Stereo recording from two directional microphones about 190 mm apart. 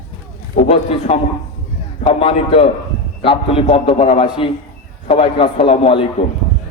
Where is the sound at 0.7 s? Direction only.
30° left (ahead or behind).